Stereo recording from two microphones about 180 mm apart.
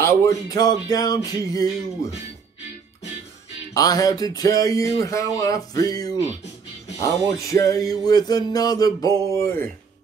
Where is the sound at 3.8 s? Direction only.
20° left (ahead or behind).